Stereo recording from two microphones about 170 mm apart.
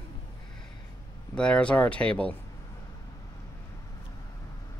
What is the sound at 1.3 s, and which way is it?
Speech, 5° left (ahead or behind).